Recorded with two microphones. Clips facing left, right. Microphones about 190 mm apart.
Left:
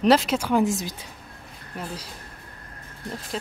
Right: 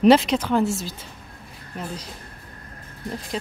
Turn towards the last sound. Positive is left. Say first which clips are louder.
# right 2 dB
turn(degrees=0)  # may be behind; listen again after turning